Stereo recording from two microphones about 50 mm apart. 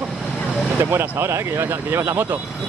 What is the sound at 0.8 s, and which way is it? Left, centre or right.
Speech, right.